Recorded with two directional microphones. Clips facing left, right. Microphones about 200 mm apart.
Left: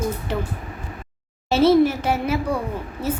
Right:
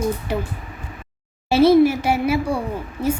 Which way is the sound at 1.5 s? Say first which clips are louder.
Right 2 dB; 10° right (ahead or behind).